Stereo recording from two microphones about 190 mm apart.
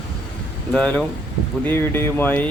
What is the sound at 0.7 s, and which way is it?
A man's voice, 5° left (ahead or behind).